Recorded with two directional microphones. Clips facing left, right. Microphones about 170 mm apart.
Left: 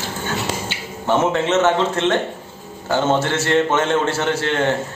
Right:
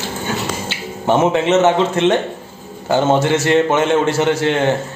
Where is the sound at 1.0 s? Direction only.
15° right (ahead or behind).